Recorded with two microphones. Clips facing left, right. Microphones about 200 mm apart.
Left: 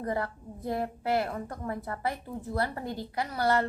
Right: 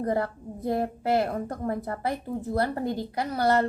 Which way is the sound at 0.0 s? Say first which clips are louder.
Right 5 dB; 40° right (ahead or behind).